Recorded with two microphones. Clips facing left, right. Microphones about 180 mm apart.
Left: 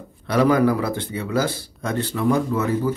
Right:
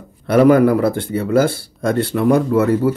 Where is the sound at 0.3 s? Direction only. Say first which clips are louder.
Right 6 dB; 50° right (ahead or behind).